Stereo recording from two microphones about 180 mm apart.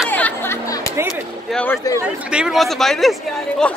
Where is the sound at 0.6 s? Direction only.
20° left (ahead or behind).